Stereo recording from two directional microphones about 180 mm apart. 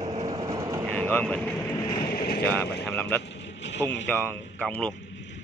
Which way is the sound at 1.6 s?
20° left (ahead or behind).